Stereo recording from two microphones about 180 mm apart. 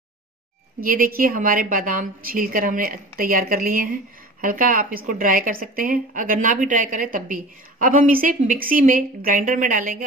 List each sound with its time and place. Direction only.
0.8 s a woman's voice: 55° right (ahead or behind)